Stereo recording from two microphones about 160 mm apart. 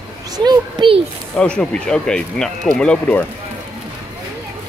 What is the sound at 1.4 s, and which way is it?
Speech, 5° left (ahead or behind).